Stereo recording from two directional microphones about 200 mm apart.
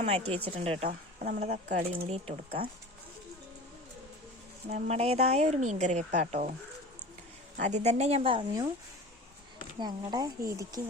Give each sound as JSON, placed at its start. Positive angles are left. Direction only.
{"t": 0.0, "sound": "speech", "side_deg": -30}
{"t": 1.2, "sound": "speech", "side_deg": -40}
{"t": 1.9, "sound": "speech", "side_deg": -30}
{"t": 4.7, "sound": "speech", "side_deg": -30}
{"t": 7.5, "sound": "speech", "side_deg": -35}
{"t": 9.7, "sound": "speech", "side_deg": -20}